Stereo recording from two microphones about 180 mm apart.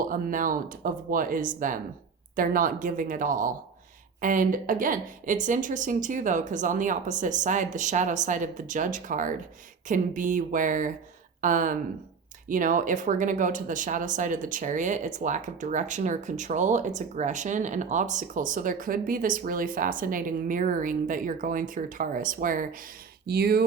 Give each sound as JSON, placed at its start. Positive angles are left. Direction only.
{"t": 0.0, "sound": "speech", "side_deg": -50}
{"t": 23.2, "sound": "speech", "side_deg": -60}